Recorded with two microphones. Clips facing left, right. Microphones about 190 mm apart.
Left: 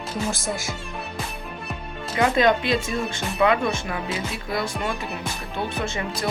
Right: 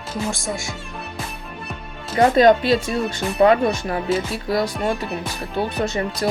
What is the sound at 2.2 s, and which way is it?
Speech, 40° right (ahead or behind).